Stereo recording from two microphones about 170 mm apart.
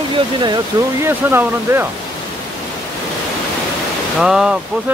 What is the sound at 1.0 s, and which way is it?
Speech, 15° right (ahead or behind).